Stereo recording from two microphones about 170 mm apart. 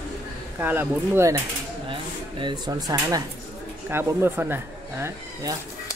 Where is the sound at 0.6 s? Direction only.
10° right (ahead or behind).